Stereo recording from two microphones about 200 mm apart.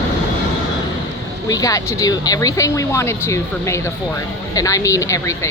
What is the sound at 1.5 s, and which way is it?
Speech, 15° left (ahead or behind).